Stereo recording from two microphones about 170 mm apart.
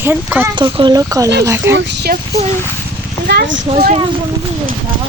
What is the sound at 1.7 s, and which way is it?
Speech, 70° right (ahead or behind).